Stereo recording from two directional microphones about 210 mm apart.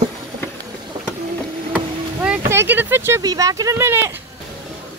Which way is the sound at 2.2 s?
10° right (ahead or behind).